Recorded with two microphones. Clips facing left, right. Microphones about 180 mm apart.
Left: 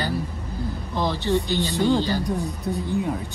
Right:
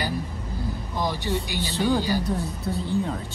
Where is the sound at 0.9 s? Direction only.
15° right (ahead or behind).